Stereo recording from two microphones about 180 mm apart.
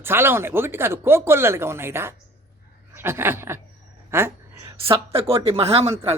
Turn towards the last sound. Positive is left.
turn(degrees=-35)  # may be behind; listen again after turning